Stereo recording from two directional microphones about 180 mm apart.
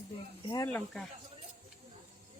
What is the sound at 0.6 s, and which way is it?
Speech, 5° left (ahead or behind).